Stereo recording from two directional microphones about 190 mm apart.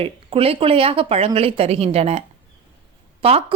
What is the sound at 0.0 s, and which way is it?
Speech, 30° right (ahead or behind).